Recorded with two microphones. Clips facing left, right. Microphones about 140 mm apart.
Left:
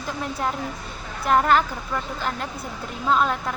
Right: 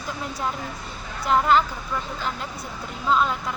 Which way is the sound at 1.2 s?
55° left (ahead or behind).